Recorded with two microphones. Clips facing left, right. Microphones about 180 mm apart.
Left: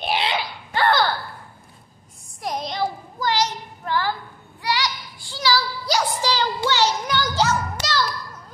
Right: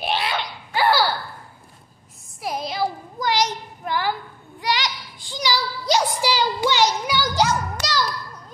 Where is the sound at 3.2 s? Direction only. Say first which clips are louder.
Right 1 dB; 15° right (ahead or behind).